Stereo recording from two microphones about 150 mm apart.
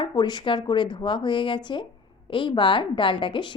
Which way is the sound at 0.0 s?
30° left (ahead or behind).